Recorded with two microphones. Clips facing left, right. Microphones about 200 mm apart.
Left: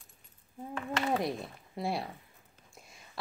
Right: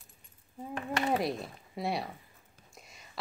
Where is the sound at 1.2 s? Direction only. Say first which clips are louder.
Right 1 dB; centre (ahead or behind).